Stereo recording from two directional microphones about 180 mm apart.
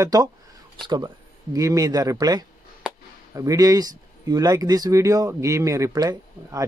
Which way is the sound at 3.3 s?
20° right (ahead or behind).